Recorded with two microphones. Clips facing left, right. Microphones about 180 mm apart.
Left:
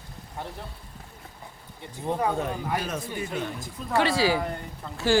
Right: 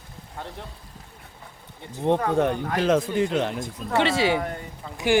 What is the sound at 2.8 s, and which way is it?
Speech, 85° right.